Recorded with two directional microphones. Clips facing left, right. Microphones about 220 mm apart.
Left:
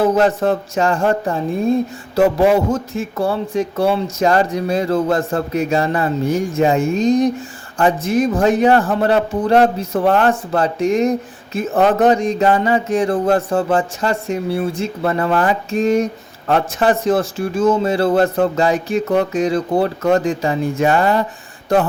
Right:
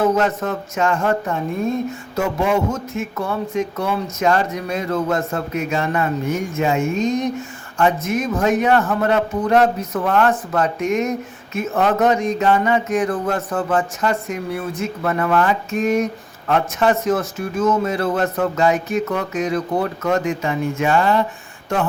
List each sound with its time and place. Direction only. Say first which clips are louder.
0.0 s speech: left 4 dB; 30° left (ahead or behind)